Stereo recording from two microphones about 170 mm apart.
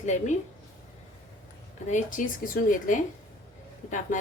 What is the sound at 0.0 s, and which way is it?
Speech, 45° left (ahead or behind).